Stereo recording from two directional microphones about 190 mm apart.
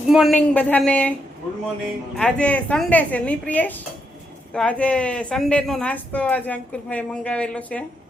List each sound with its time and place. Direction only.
0.1 s speech: centre (ahead or behind)
0.3 s speech: 10° left (ahead or behind)
2.1 s speech: 5° left (ahead or behind)